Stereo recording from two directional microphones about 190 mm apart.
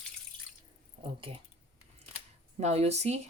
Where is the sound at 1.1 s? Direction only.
30° right (ahead or behind).